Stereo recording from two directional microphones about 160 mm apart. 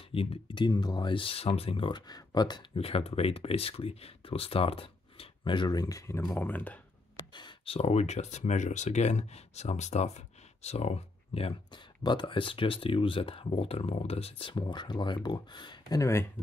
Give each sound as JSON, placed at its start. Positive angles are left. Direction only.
{"t": 0.1, "sound": "speech", "side_deg": 35}
{"t": 7.3, "sound": "speech", "side_deg": 30}